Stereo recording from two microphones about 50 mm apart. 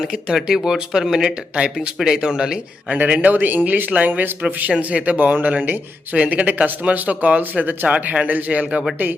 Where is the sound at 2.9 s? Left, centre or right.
Right.